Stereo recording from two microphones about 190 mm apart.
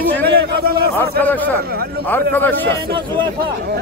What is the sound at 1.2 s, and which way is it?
Speech, 10° left (ahead or behind).